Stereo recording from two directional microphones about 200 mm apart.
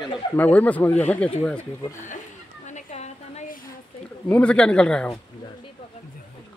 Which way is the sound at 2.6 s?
35° left (ahead or behind).